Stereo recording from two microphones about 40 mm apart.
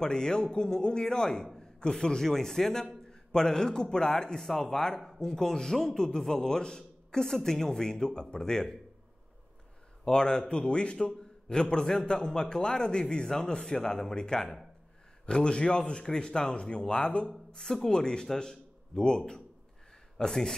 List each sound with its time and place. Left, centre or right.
0.0 s a man's voice: centre
10.0 s speech: centre
17.5 s speech: centre